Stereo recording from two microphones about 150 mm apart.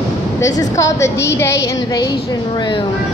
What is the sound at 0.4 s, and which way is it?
A woman's voice, 20° left (ahead or behind).